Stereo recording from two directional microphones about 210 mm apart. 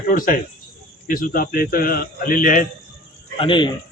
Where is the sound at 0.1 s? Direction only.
40° left (ahead or behind).